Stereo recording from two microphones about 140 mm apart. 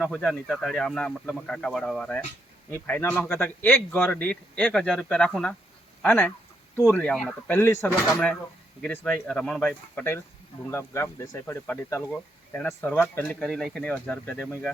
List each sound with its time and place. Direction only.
0.0 s a man's voice: 5° left (ahead or behind)
7.5 s a man's voice: 15° left (ahead or behind)
7.9 s a man's voice: 5° left (ahead or behind)
13.4 s speech: centre (ahead or behind)
14.3 s speech: 5° right (ahead or behind)